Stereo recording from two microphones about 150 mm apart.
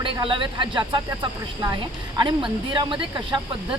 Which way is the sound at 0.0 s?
35° right (ahead or behind).